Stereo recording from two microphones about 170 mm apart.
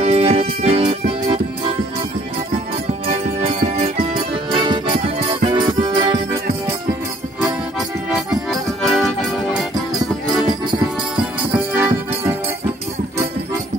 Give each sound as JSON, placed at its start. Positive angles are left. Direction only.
{"t": 0.0, "sound": "music", "side_deg": -35}
{"t": 4.5, "sound": "music", "side_deg": -30}
{"t": 8.1, "sound": "music", "side_deg": 0}
{"t": 11.7, "sound": "music", "side_deg": -10}